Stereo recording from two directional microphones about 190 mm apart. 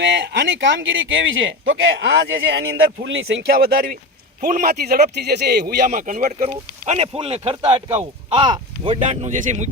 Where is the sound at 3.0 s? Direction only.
70° right (ahead or behind).